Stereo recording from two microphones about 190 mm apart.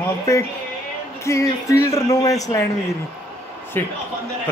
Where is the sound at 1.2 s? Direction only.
15° left (ahead or behind).